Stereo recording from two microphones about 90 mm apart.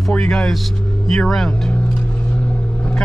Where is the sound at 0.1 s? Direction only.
5° left (ahead or behind).